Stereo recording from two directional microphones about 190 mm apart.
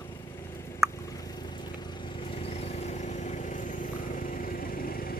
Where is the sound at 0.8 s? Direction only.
15° right (ahead or behind).